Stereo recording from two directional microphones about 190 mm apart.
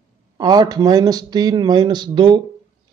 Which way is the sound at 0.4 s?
20° right (ahead or behind).